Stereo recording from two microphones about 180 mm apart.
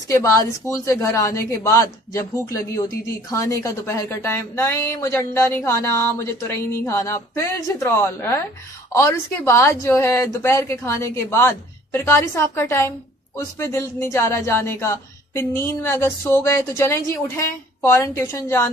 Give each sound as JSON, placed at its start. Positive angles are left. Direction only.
{"t": 0.1, "sound": "speech", "side_deg": 15}
{"t": 3.3, "sound": "speech", "side_deg": 15}